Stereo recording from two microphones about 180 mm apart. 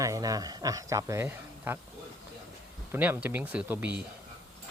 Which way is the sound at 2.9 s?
10° right (ahead or behind).